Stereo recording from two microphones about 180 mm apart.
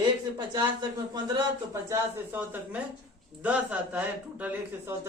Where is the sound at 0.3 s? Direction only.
25° right (ahead or behind).